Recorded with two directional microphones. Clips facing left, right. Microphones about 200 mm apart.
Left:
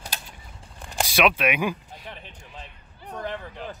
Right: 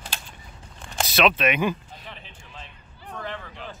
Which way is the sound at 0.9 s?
10° left (ahead or behind).